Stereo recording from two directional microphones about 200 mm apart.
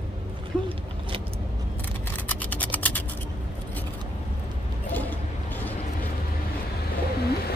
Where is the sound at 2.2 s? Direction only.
10° left (ahead or behind).